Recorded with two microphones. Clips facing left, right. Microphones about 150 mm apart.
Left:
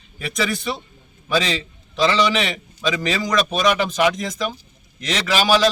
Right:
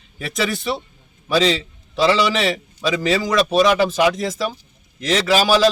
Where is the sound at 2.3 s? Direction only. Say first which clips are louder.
Right 3 dB; 30° right (ahead or behind).